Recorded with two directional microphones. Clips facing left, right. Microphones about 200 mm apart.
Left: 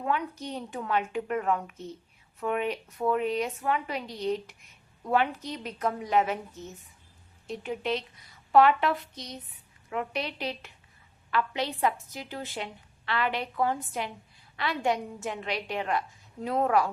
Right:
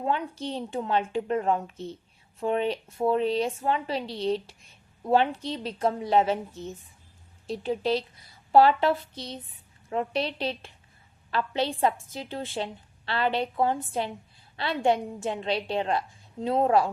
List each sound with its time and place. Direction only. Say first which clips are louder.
0.0 s a woman's voice: right 2 dB; 30° right (ahead or behind)